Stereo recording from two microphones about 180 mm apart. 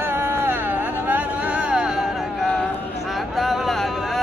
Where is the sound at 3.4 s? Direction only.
Centre (ahead or behind).